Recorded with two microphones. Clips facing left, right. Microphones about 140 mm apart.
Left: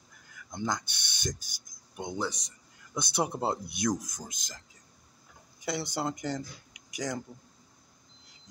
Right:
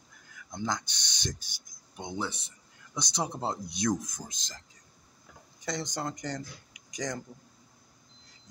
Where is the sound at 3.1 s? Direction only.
10° left (ahead or behind).